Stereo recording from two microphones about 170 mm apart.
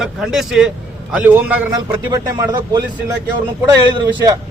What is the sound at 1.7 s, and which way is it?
Speech, 20° right (ahead or behind).